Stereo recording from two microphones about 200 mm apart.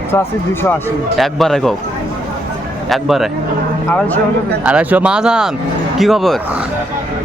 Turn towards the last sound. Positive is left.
turn(degrees=0)  # may be behind; listen again after turning